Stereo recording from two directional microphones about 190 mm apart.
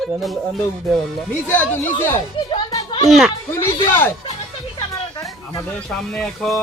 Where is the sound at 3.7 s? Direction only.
25° left (ahead or behind).